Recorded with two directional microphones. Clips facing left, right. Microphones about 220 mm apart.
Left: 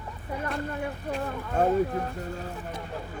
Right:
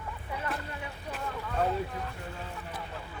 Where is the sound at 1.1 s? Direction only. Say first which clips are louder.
Left 4 dB; 45° left (ahead or behind).